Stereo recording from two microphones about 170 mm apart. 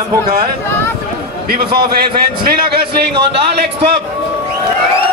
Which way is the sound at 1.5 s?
60° right (ahead or behind).